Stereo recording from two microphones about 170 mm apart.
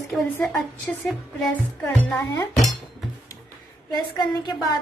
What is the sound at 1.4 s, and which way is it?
A woman's voice, 5° left (ahead or behind).